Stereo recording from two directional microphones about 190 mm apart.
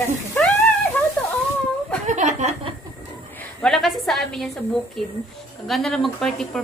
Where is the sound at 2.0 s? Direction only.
40° right (ahead or behind).